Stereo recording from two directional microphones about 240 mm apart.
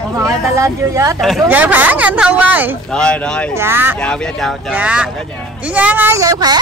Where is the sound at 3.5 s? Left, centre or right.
Centre.